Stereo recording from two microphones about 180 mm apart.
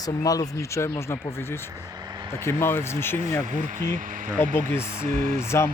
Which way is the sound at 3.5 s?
45° right (ahead or behind).